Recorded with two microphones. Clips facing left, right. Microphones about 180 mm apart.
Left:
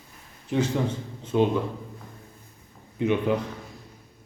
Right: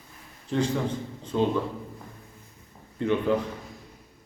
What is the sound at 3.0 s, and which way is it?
Speech, 15° left (ahead or behind).